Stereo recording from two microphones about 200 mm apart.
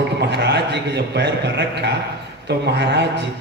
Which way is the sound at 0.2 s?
60° right (ahead or behind).